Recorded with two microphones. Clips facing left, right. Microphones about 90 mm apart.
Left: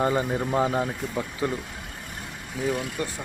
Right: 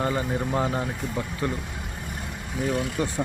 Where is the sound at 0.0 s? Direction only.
15° left (ahead or behind).